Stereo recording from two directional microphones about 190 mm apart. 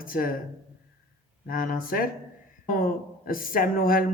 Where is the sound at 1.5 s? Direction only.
50° left (ahead or behind).